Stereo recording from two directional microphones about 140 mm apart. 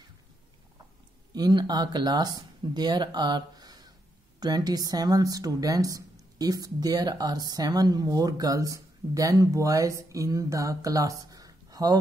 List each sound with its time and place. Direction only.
1.3 s a woman's voice: 30° right (ahead or behind)